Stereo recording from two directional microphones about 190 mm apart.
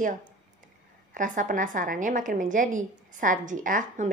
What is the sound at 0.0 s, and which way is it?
A woman's voice, 45° right (ahead or behind).